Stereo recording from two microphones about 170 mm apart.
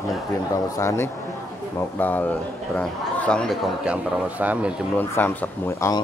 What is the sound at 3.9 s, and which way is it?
Speech, 10° right (ahead or behind).